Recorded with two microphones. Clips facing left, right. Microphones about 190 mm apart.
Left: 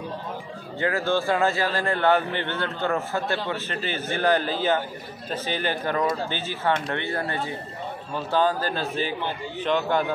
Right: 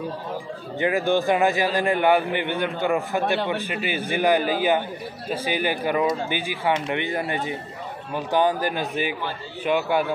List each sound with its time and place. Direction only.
0.7 s a man's voice: 15° right (ahead or behind)